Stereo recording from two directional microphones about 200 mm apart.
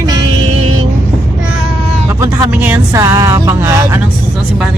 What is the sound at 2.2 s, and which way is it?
Speech, 10° right (ahead or behind).